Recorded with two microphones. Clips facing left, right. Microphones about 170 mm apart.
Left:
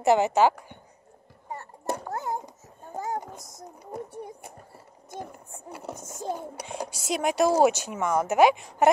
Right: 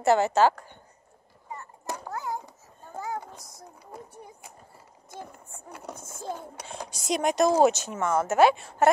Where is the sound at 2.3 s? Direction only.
20° left (ahead or behind).